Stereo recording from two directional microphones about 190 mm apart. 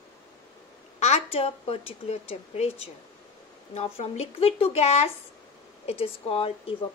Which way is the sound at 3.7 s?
35° left (ahead or behind).